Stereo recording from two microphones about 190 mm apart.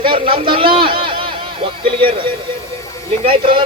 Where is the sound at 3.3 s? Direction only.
25° right (ahead or behind).